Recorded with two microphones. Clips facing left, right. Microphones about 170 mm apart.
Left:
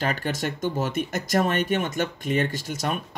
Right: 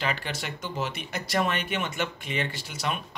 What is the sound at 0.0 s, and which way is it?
Speech, 45° left (ahead or behind).